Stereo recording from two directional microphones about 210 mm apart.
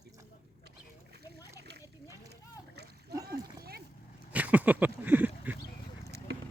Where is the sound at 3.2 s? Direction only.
50° right (ahead or behind).